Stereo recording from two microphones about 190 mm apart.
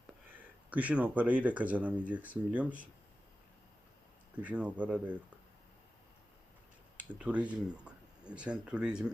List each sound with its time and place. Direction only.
0.3 s speech: 10° right (ahead or behind)
4.4 s speech: 5° right (ahead or behind)
6.9 s speech: 5° right (ahead or behind)